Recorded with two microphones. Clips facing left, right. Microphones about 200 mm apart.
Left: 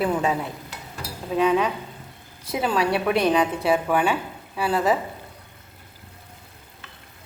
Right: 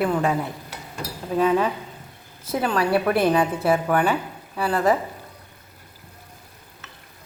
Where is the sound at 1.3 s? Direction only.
Centre (ahead or behind).